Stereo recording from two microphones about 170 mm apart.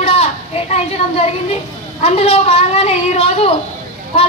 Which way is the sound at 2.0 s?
35° left (ahead or behind).